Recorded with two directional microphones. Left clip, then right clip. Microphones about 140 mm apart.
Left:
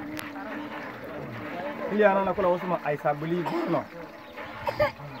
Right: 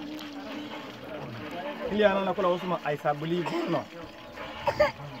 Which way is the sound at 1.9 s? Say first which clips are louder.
Left 2 dB; 5° left (ahead or behind).